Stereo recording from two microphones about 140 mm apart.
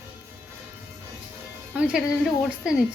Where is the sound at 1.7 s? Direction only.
5° right (ahead or behind).